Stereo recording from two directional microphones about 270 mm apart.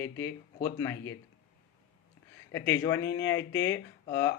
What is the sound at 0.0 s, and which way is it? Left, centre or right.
Speech, centre.